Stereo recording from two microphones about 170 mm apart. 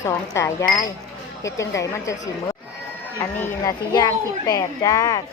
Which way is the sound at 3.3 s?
15° left (ahead or behind).